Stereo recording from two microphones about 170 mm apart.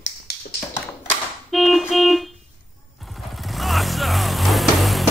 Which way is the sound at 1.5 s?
Centre (ahead or behind).